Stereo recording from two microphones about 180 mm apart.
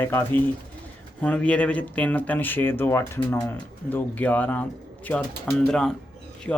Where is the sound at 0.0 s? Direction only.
10° left (ahead or behind).